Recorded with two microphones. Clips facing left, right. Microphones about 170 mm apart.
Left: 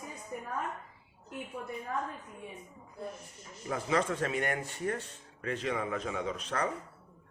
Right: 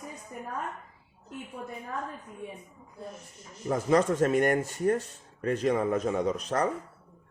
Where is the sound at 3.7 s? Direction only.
40° right (ahead or behind).